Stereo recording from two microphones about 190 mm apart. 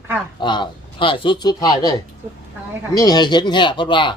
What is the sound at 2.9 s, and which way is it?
Speech, 20° left (ahead or behind).